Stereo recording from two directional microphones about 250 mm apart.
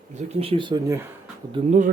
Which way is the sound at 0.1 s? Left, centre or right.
Right.